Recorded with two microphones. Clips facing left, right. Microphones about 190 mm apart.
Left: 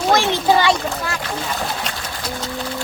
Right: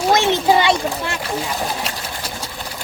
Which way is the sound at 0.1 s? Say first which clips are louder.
Right 1 dB; 20° right (ahead or behind).